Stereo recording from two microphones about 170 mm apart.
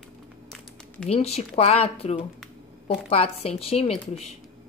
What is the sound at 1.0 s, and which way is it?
Speech, 35° left (ahead or behind).